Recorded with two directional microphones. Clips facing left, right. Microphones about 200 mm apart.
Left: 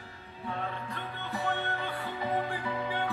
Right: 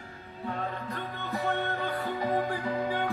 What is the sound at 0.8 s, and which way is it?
Music, 40° right (ahead or behind).